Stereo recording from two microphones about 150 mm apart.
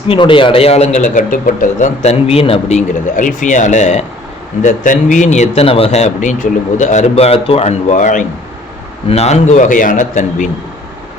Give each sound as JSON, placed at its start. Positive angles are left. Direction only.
{"t": 0.1, "sound": "a man's voice", "side_deg": 35}
{"t": 9.0, "sound": "a man's voice", "side_deg": 45}